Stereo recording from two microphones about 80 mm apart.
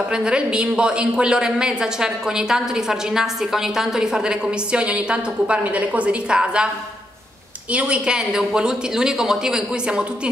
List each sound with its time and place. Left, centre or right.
0.1 s a woman's voice: centre
7.7 s a woman's voice: centre